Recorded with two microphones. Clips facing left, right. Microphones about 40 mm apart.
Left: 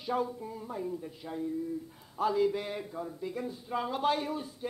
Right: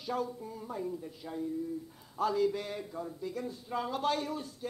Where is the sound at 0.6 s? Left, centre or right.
Centre.